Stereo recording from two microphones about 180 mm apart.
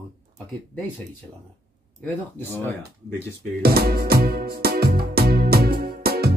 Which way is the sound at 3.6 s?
60° right (ahead or behind).